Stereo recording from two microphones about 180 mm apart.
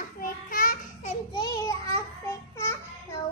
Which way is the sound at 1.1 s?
25° left (ahead or behind).